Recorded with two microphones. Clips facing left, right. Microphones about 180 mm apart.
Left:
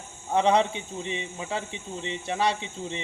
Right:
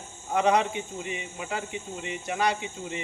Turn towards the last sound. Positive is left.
turn(degrees=25)  # may be behind; listen again after turning